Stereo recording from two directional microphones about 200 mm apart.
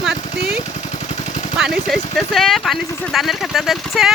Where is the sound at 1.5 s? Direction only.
5° right (ahead or behind).